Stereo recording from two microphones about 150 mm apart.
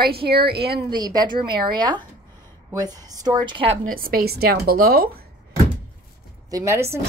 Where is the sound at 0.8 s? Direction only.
30° right (ahead or behind).